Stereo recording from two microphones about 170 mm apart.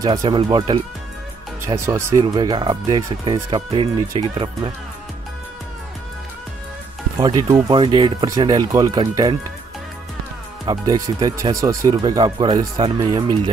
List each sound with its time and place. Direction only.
0.0 s speech: 25° right (ahead or behind)
1.7 s speech: 15° right (ahead or behind)
7.2 s speech: 20° right (ahead or behind)
10.6 s speech: 25° right (ahead or behind)